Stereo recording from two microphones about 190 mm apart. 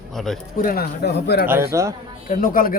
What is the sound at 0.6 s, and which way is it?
Speech, 50° left (ahead or behind).